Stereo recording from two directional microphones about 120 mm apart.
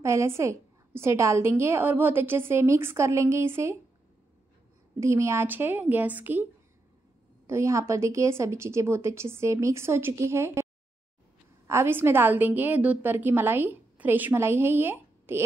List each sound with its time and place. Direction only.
0.0 s a woman's voice: 25° right (ahead or behind)
5.0 s a woman's voice: 25° right (ahead or behind)
7.4 s a woman's voice: 25° right (ahead or behind)